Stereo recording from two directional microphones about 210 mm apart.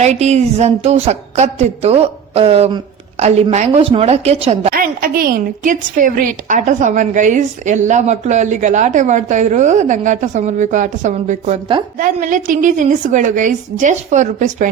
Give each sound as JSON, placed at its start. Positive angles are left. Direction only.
{"t": 0.0, "sound": "a woman's voice", "side_deg": -30}
{"t": 4.7, "sound": "a woman's voice", "side_deg": -45}